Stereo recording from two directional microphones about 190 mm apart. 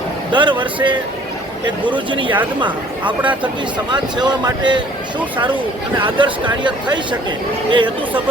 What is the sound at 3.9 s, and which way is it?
Speech, 20° right (ahead or behind).